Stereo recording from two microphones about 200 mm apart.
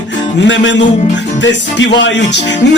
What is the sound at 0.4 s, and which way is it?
Music, 65° left (ahead or behind).